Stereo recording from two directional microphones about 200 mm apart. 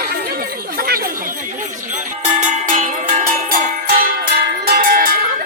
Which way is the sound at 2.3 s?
40° right (ahead or behind).